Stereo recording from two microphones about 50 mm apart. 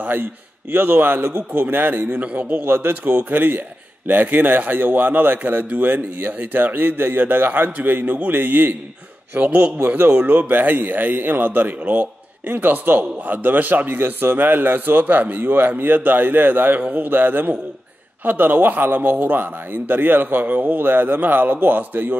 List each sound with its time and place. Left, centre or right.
0.0 s a man's voice: right
10.1 s a man's voice: right